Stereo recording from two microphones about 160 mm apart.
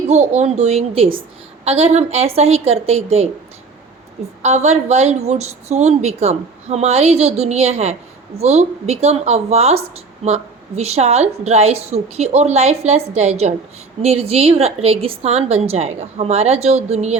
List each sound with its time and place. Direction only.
0.1 s a woman's voice: 45° right (ahead or behind)
4.4 s a woman's voice: 45° right (ahead or behind)